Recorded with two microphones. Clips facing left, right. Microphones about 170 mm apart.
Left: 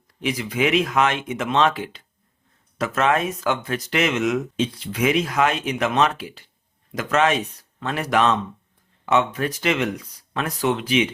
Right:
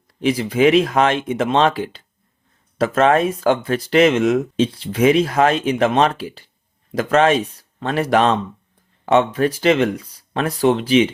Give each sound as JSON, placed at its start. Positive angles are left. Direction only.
{"t": 0.2, "sound": "speech", "side_deg": -30}